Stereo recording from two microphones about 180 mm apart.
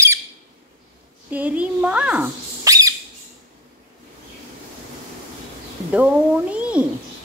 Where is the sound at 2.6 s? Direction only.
20° right (ahead or behind).